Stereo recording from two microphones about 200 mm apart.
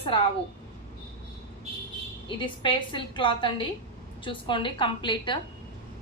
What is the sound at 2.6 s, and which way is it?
A woman's voice, 25° left (ahead or behind).